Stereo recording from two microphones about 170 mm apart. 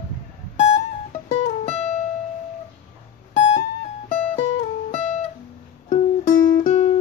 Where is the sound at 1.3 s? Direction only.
40° left (ahead or behind).